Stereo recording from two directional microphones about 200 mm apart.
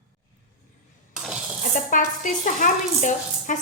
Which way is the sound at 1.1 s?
Centre (ahead or behind).